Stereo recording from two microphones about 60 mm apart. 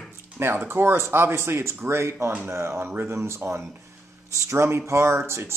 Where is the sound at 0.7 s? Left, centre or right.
Right.